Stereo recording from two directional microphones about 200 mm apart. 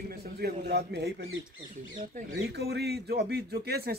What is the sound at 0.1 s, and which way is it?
Speech, 50° right (ahead or behind).